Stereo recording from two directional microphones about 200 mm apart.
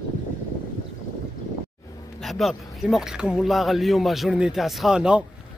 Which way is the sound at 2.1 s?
Centre (ahead or behind).